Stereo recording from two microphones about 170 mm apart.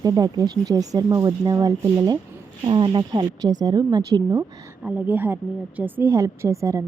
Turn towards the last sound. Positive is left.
turn(degrees=-15)  # may be behind; listen again after turning